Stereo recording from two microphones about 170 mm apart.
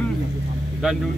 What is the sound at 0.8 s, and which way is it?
Speech, 5° right (ahead or behind).